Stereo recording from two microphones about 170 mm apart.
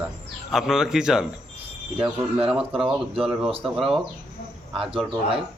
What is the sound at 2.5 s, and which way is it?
Speech, 5° right (ahead or behind).